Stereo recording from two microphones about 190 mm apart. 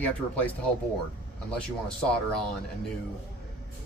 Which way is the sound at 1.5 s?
5° left (ahead or behind).